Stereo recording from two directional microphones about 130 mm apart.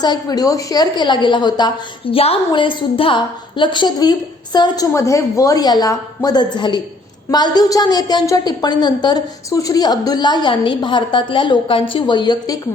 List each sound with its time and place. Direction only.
0.0 s a woman's voice: 30° left (ahead or behind)
2.0 s a woman's voice: 45° left (ahead or behind)